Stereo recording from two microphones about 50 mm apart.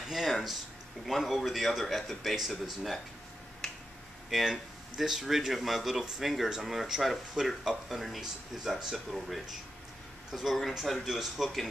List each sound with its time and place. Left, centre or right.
0.1 s speech: centre
3.6 s finger snapping: centre
4.3 s speech: centre